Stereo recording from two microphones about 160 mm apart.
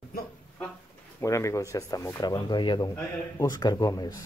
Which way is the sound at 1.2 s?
20° left (ahead or behind).